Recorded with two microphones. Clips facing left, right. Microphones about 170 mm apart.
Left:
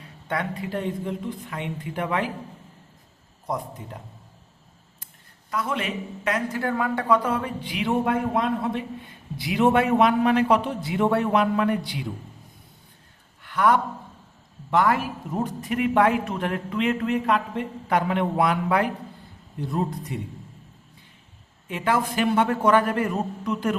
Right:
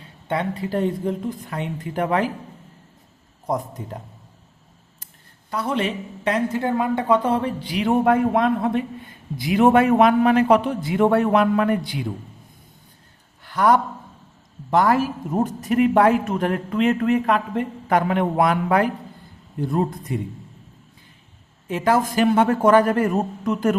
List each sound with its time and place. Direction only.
0.0 s speech: 25° right (ahead or behind); by 2.3 s 40° right (ahead or behind)
3.4 s speech: 45° right (ahead or behind)
5.5 s speech: 30° right (ahead or behind)
8.0 s a man's voice: 55° right (ahead or behind)
13.4 s a sound: 35° right (ahead or behind)
14.7 s a man's voice: 40° right (ahead or behind)
21.7 s a man's voice: 40° right (ahead or behind)